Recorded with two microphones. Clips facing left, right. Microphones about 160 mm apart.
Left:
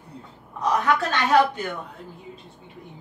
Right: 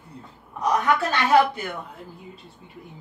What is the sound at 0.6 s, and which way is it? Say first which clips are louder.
Speech: even; 10° right (ahead or behind).